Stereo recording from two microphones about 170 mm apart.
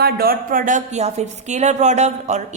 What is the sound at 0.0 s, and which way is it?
A woman's voice, 60° right (ahead or behind).